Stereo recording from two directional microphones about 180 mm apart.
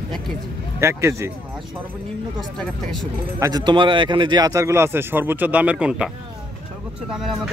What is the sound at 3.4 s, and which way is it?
Speech, 20° right (ahead or behind).